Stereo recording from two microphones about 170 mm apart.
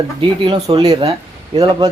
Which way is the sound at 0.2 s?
30° right (ahead or behind).